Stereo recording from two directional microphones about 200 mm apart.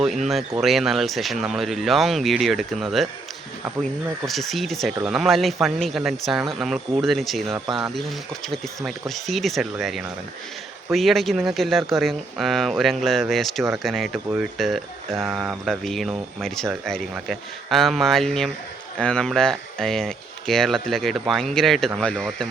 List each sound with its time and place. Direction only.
0.0 s speech: centre (ahead or behind)
4.3 s speech: centre (ahead or behind)
7.7 s speech: 20° right (ahead or behind)
8.4 s speech: centre (ahead or behind)
15.1 s speech: 10° right (ahead or behind)
15.7 s speech: centre (ahead or behind)